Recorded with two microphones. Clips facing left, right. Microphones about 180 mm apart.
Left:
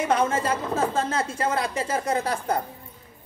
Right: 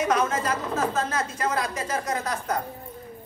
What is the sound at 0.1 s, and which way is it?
A woman's voice, 30° left (ahead or behind).